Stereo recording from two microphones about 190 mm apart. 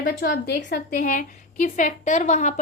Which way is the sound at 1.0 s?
45° left (ahead or behind).